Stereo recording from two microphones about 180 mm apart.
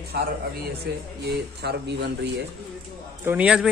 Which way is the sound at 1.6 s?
70° right (ahead or behind).